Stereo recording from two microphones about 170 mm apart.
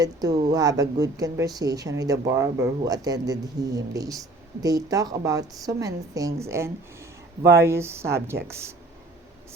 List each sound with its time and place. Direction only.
0.0 s speech: 20° right (ahead or behind)